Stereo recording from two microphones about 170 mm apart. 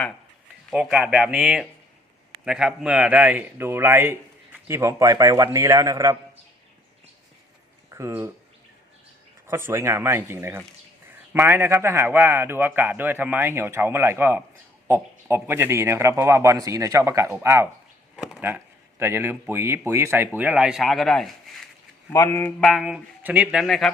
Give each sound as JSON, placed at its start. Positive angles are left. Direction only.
{"t": 0.7, "sound": "a man's voice", "side_deg": -5}
{"t": 7.9, "sound": "a man's voice", "side_deg": -15}
{"t": 9.5, "sound": "a man's voice", "side_deg": -15}
{"t": 18.2, "sound": "a man's voice", "side_deg": -5}
{"t": 22.1, "sound": "speech", "side_deg": 15}
{"t": 22.6, "sound": "speech", "side_deg": 0}